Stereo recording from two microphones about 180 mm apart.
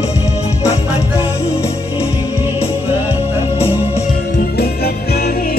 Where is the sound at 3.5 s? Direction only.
35° left (ahead or behind).